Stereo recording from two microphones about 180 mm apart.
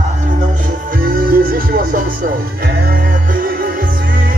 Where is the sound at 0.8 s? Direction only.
50° right (ahead or behind).